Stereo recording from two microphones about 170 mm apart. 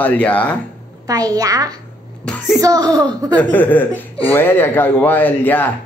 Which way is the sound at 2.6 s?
20° right (ahead or behind).